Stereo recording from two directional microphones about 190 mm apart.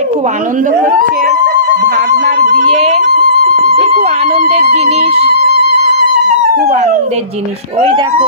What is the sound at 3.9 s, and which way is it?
Music, 35° right (ahead or behind).